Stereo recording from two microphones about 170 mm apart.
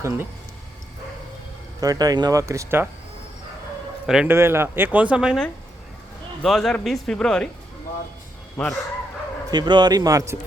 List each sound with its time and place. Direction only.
0.0 s speech: 15° right (ahead or behind)
1.8 s speech: 20° right (ahead or behind)
4.0 s speech: 5° right (ahead or behind)
4.4 s speech: 15° right (ahead or behind); by 7.4 s 5° left (ahead or behind)
8.5 s speech: 5° left (ahead or behind)
9.5 s speech: 25° right (ahead or behind)